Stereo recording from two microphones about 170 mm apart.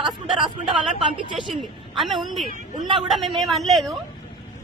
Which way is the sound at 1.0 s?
30° right (ahead or behind).